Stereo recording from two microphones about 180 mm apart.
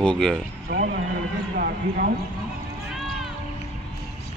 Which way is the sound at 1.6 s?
55° right (ahead or behind).